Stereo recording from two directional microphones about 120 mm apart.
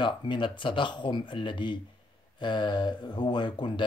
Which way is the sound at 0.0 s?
40° left (ahead or behind).